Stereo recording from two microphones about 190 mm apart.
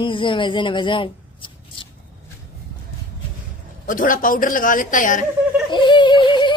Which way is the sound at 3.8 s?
45° left (ahead or behind).